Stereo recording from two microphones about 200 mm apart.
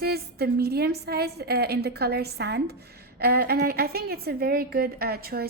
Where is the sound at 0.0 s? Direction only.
50° right (ahead or behind).